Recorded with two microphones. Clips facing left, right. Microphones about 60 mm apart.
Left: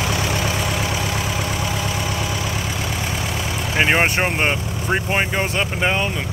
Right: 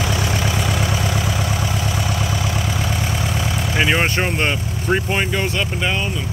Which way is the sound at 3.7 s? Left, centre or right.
Left.